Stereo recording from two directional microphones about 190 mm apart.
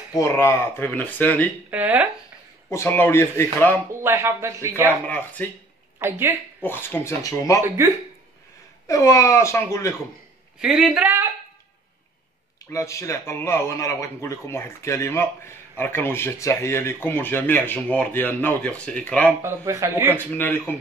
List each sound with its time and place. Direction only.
0.1 s a man's voice: 15° left (ahead or behind)
1.7 s speech: 10° right (ahead or behind)
2.7 s a man's voice: 10° left (ahead or behind)
4.0 s speech: 15° right (ahead or behind)
5.0 s a man's voice: 10° left (ahead or behind)
5.9 s speech: 10° right (ahead or behind)
6.6 s a man's voice: 10° left (ahead or behind)
7.6 s speech: 15° right (ahead or behind)
8.8 s a man's voice: 15° left (ahead or behind)
10.6 s a woman's voice: 5° right (ahead or behind)
12.7 s a man's voice: 15° left (ahead or behind)
19.4 s speech: 15° right (ahead or behind)
20.1 s a man's voice: 10° left (ahead or behind)